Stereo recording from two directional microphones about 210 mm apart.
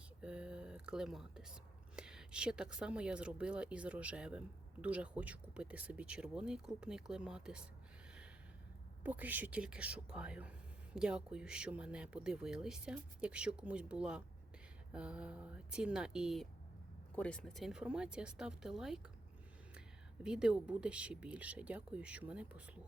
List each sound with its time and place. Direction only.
0.2 s whispering: 5° right (ahead or behind)
2.0 s speech: 5° right (ahead or behind)
9.0 s speech: 10° right (ahead or behind)
20.2 s speech: 5° right (ahead or behind)